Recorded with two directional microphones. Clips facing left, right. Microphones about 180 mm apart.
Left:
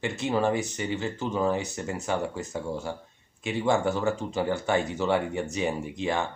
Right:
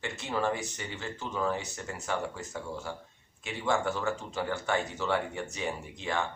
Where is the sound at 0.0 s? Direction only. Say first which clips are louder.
Left 6 dB; 15° left (ahead or behind).